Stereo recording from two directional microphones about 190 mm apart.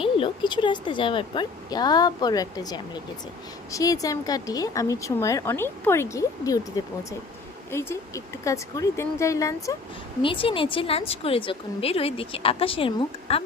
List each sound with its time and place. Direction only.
0.0 s a woman's voice: 25° left (ahead or behind)
10.2 s a woman's voice: 30° left (ahead or behind)